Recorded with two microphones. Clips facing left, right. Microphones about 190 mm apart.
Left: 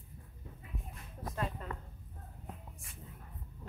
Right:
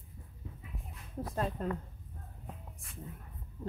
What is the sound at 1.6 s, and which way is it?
Speech, 40° right (ahead or behind).